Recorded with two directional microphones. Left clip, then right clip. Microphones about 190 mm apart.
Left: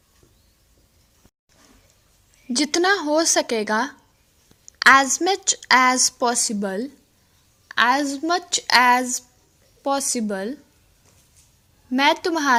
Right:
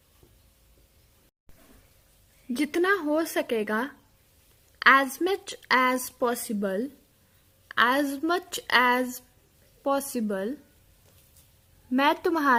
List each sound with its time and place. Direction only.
2.5 s a woman's voice: 15° left (ahead or behind)
11.9 s a woman's voice: 10° left (ahead or behind)